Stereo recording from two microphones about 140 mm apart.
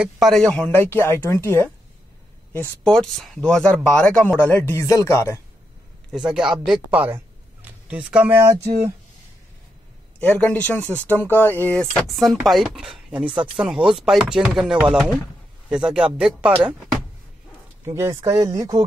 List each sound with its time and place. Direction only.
0.0 s a man's voice: centre (ahead or behind); by 1.7 s 15° left (ahead or behind)
2.8 s a man's voice: 5° left (ahead or behind)
6.1 s speech: 5° right (ahead or behind)
10.2 s a man's voice: 10° left (ahead or behind)
10.9 s speech: 15° right (ahead or behind)
11.1 s a man's voice: 15° left (ahead or behind); by 17.0 s 5° right (ahead or behind)
17.8 s speech: 20° right (ahead or behind)